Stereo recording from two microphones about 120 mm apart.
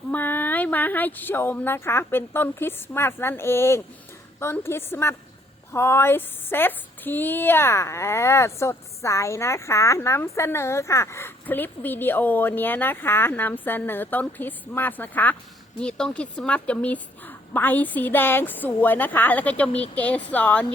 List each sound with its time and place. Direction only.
0.1 s a woman's voice: 15° left (ahead or behind)